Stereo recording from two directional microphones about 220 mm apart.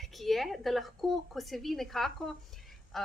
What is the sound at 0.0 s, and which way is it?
A woman's voice, centre (ahead or behind).